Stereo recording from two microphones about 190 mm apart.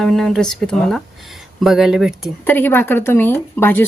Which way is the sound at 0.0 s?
Centre (ahead or behind).